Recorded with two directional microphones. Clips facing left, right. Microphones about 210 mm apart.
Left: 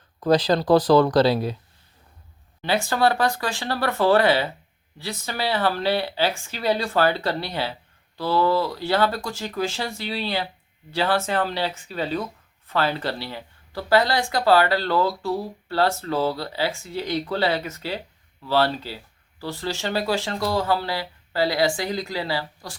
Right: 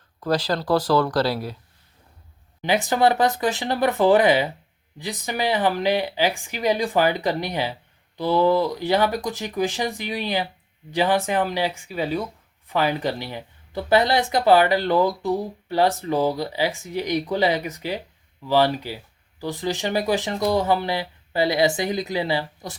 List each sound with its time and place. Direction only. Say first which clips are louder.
0.2 s speech: left 4 dB; 20° left (ahead or behind)
2.6 s speech: right 2 dB; 15° right (ahead or behind)